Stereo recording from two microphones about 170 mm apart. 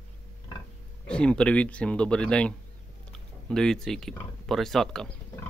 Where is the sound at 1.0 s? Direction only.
5° left (ahead or behind).